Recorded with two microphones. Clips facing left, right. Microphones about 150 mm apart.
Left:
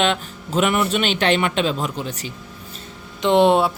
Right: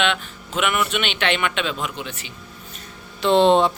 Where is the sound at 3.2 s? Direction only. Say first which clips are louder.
Even; 15° left (ahead or behind).